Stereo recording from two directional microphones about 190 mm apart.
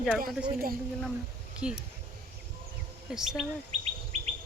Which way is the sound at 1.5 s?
5° right (ahead or behind).